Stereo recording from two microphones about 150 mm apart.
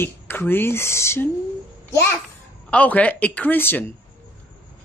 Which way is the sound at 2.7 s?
10° left (ahead or behind).